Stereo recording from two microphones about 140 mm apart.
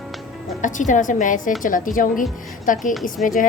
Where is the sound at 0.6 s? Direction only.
65° left (ahead or behind).